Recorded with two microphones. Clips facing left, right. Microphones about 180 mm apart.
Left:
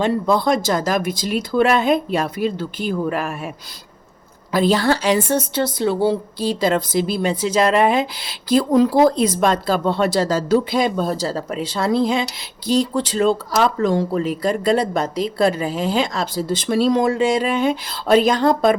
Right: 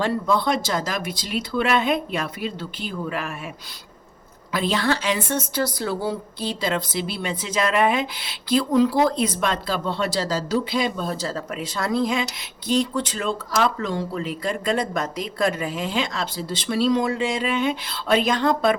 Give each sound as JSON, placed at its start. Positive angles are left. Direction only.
{"t": 0.3, "sound": "speech", "side_deg": 40}
{"t": 4.5, "sound": "a woman's voice", "side_deg": 40}
{"t": 5.6, "sound": "a woman's voice", "side_deg": 25}